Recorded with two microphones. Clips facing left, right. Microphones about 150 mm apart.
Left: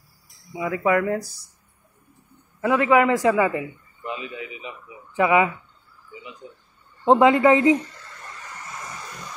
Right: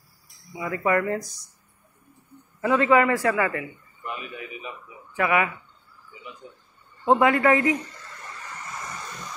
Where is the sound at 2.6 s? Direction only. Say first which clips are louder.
Left 1 dB; 10° left (ahead or behind).